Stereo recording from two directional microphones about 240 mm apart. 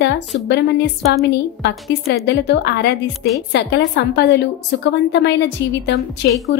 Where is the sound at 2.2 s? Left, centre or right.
Left.